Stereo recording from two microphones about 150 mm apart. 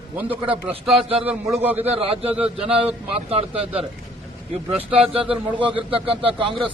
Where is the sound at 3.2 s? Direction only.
40° right (ahead or behind).